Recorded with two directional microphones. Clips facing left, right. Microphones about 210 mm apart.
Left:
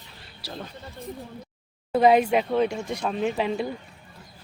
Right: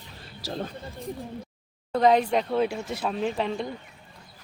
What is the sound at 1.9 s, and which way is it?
Speech, 10° left (ahead or behind).